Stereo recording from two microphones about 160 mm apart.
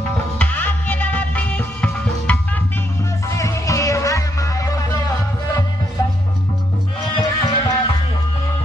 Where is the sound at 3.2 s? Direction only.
20° left (ahead or behind).